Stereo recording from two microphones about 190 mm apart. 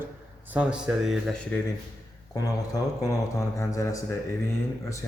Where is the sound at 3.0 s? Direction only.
15° left (ahead or behind).